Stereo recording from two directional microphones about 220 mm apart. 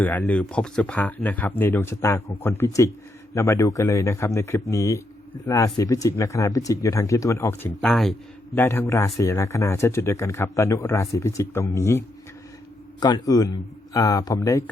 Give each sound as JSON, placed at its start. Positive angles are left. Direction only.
{"t": 0.0, "sound": "speech", "side_deg": 5}